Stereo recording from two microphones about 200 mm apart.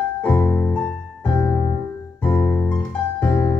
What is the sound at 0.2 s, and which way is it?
Music, 10° left (ahead or behind).